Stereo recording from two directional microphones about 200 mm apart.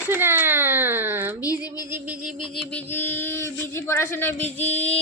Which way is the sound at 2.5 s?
5° left (ahead or behind).